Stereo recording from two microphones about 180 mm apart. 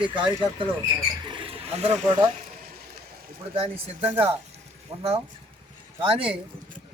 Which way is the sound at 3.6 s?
35° right (ahead or behind).